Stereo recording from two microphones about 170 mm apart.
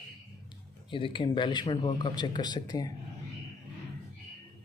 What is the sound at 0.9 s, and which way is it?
A man's voice, 30° left (ahead or behind).